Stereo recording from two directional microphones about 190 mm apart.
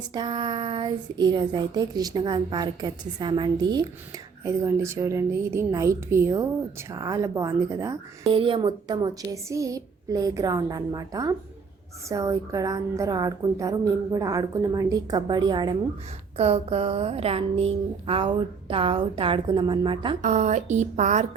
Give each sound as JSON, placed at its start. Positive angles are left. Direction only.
{"t": 0.1, "sound": "a woman's voice", "side_deg": -25}
{"t": 8.2, "sound": "speech", "side_deg": -30}
{"t": 20.2, "sound": "speech", "side_deg": -40}